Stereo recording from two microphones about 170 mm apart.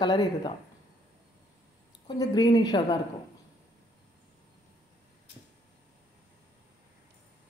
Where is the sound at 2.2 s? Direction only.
25° left (ahead or behind).